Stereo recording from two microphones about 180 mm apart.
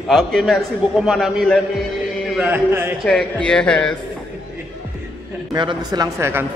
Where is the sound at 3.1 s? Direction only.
5° left (ahead or behind).